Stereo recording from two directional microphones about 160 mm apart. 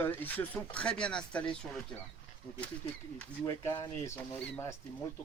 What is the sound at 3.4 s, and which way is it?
Speech, 20° left (ahead or behind).